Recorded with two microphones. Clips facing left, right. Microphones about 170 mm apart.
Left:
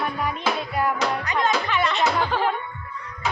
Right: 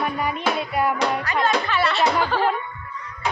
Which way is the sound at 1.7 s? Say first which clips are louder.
Right 2 dB; 15° left (ahead or behind).